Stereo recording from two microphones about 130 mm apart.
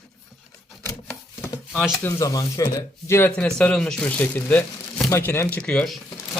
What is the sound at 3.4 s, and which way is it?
Speech, 10° left (ahead or behind).